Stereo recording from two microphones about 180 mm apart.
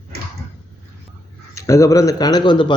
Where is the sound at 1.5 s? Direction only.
15° left (ahead or behind).